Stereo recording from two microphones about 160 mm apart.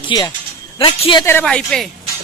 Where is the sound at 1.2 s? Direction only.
15° left (ahead or behind).